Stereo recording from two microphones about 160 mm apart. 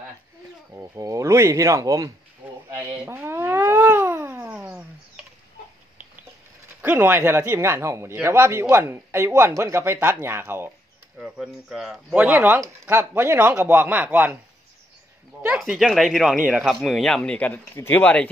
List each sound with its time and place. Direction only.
0.7 s speech: 20° right (ahead or behind)
2.9 s a sound: 15° right (ahead or behind)
6.8 s speech: 15° right (ahead or behind)
15.4 s speech: 5° right (ahead or behind)